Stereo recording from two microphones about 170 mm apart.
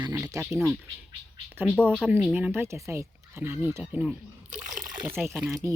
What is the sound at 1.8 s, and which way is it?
Speech, 5° left (ahead or behind).